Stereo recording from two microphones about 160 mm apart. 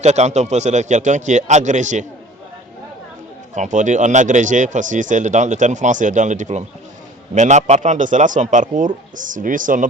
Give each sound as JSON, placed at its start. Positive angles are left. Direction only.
{"t": 0.0, "sound": "speech", "side_deg": -45}
{"t": 3.5, "sound": "speech", "side_deg": -50}